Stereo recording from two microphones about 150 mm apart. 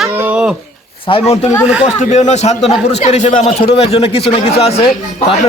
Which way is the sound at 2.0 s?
50° left (ahead or behind).